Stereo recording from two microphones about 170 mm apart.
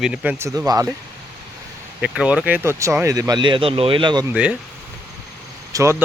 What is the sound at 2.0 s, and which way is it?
Speech, 5° right (ahead or behind).